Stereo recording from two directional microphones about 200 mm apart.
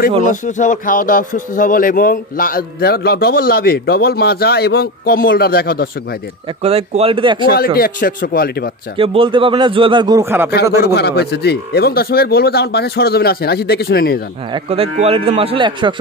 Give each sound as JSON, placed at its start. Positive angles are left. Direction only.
{"t": 0.2, "sound": "speech", "side_deg": 40}
{"t": 6.6, "sound": "speech", "side_deg": -30}
{"t": 7.5, "sound": "speech", "side_deg": 50}
{"t": 8.9, "sound": "speech", "side_deg": -25}
{"t": 10.8, "sound": "speech", "side_deg": 55}
{"t": 14.5, "sound": "speech", "side_deg": -30}